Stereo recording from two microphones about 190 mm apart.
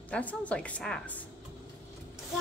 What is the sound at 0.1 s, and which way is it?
A woman's voice, 10° left (ahead or behind).